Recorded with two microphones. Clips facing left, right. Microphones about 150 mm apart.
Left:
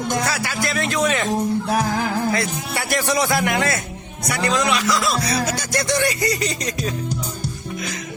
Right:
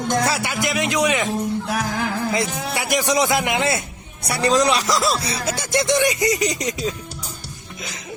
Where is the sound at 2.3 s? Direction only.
20° right (ahead or behind).